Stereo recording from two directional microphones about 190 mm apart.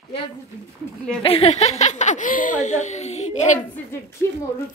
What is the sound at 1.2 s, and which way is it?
Speech, 30° left (ahead or behind).